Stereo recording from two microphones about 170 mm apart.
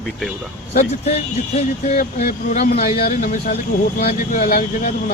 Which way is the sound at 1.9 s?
55° left (ahead or behind).